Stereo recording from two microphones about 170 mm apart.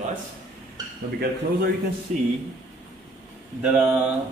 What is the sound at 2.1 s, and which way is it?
Speech, 40° right (ahead or behind).